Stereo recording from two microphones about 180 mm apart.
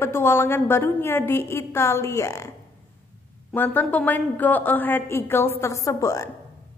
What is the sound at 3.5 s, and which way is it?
A woman's voice, 10° left (ahead or behind).